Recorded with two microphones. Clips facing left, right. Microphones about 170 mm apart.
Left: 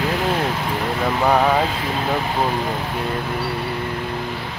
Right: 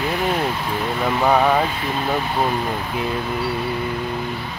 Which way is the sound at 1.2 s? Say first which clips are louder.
Even; centre (ahead or behind).